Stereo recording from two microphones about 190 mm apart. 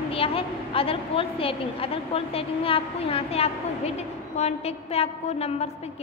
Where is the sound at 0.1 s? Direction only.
30° left (ahead or behind).